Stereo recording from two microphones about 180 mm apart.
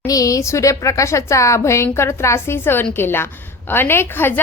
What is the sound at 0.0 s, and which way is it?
A woman's voice, 20° left (ahead or behind).